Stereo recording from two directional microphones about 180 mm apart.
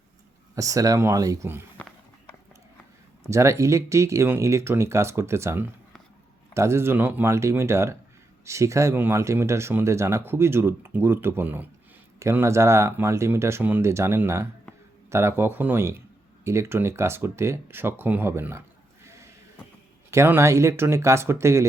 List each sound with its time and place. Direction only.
0.5 s speech: 20° right (ahead or behind)
3.2 s speech: 15° right (ahead or behind)
20.1 s speech: 15° right (ahead or behind)